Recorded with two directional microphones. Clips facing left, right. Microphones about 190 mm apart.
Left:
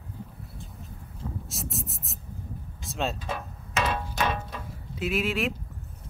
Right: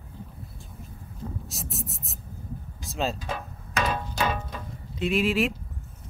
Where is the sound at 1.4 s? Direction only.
Centre (ahead or behind).